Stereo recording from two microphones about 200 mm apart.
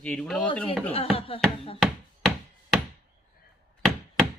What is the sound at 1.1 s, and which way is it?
Speech, 30° left (ahead or behind).